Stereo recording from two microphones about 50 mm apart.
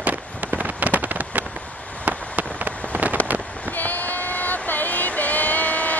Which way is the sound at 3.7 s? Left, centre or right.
Left.